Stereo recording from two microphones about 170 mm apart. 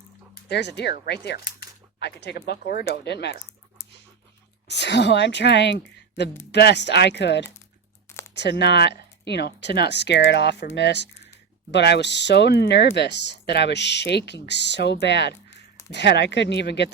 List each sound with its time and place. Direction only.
0.4 s speech: 80° left
4.7 s speech: 90° left